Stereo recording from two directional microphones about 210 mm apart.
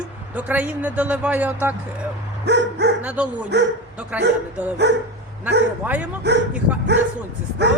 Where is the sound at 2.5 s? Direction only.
55° right (ahead or behind).